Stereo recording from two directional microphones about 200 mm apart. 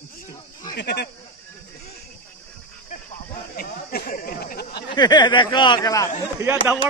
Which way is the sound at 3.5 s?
50° left (ahead or behind).